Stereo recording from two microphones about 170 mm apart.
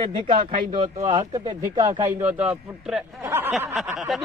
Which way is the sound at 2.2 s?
10° right (ahead or behind).